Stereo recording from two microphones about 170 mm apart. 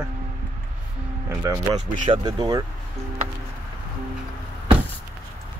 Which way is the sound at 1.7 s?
45° right (ahead or behind).